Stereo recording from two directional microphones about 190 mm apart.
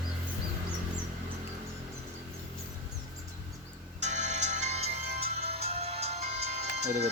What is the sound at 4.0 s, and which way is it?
Music, 35° right (ahead or behind).